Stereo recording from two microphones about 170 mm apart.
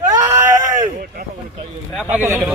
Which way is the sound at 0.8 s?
60° right (ahead or behind).